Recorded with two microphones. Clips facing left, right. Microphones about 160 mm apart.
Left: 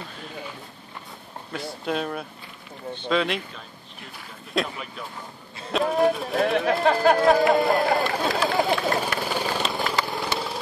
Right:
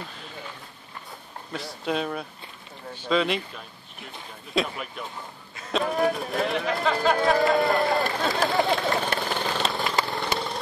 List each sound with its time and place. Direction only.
1.9 s speech: centre (ahead or behind)
6.4 s speech: 55° left (ahead or behind)
7.2 s speech: centre (ahead or behind)
9.2 s vehicle: 10° left (ahead or behind)